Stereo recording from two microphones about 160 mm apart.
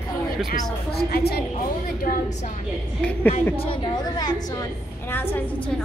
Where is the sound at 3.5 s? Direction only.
35° left (ahead or behind).